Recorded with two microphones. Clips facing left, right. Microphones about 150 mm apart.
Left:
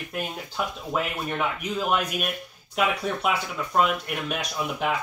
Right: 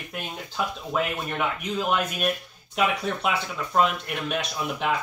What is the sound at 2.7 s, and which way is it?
Speech, 5° left (ahead or behind).